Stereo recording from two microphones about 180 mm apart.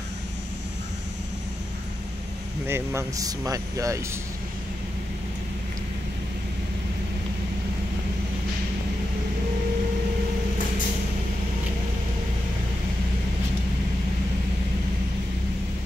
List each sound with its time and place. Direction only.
2.6 s speech: 15° right (ahead or behind)